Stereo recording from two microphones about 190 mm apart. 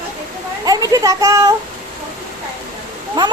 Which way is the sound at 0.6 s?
20° right (ahead or behind).